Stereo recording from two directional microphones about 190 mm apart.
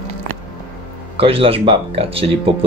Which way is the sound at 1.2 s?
30° right (ahead or behind).